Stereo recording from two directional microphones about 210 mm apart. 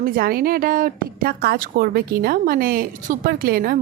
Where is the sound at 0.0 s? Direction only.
45° right (ahead or behind).